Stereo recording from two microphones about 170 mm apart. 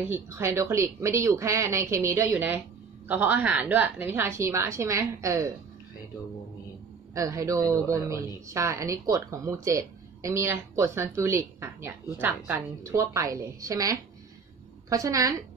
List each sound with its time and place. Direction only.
0.0 s speech: 15° right (ahead or behind)
7.2 s a woman's voice: 20° right (ahead or behind)